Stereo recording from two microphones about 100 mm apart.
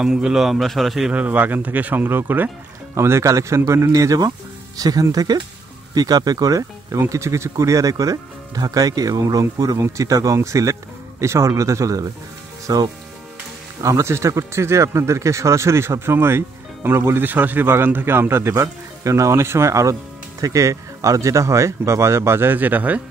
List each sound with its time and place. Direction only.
0.0 s a man's voice: 5° right (ahead or behind)
1.1 s speech: 15° right (ahead or behind)